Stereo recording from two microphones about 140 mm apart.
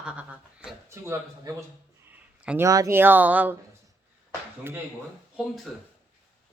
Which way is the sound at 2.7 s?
20° right (ahead or behind).